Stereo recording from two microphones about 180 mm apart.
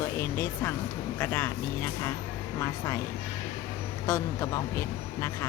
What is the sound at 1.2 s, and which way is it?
Speech, 10° left (ahead or behind).